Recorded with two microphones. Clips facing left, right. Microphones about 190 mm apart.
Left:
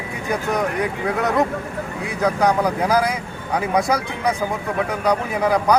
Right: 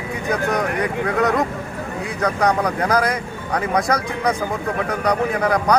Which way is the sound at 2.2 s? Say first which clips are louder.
Left 1 dB; 5° left (ahead or behind).